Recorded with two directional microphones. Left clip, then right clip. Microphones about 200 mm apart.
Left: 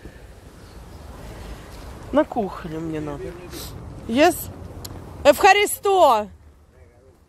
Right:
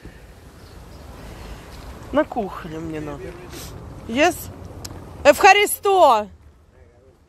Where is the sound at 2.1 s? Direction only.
20° left (ahead or behind).